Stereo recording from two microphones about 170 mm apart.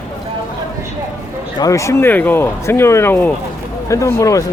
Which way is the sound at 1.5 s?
20° left (ahead or behind).